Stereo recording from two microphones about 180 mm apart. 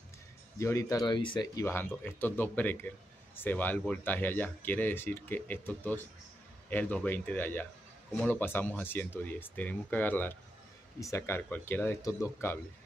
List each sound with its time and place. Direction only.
0.6 s speech: 15° left (ahead or behind)